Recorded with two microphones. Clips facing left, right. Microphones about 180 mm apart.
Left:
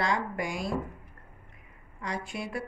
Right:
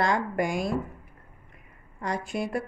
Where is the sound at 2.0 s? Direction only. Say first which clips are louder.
Right 5 dB; 45° right (ahead or behind).